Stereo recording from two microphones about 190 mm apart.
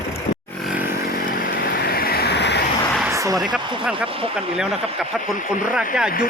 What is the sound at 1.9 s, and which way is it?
Vehicle, 55° left (ahead or behind).